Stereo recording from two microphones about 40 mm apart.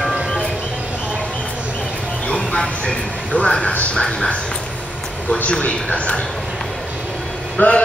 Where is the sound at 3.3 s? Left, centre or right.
Left.